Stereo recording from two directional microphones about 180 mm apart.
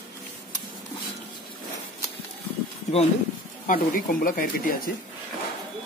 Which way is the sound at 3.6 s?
50° left (ahead or behind).